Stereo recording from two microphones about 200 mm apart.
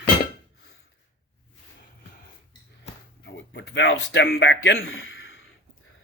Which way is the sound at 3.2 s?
65° left (ahead or behind).